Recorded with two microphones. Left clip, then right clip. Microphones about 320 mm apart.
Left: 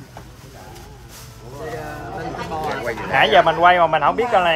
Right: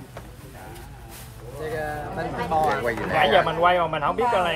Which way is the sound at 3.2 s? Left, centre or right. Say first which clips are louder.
Left 6 dB; left.